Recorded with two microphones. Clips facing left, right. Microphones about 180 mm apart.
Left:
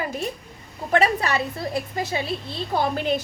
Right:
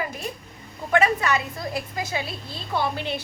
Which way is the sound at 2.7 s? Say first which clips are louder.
Left 3 dB; 45° left (ahead or behind).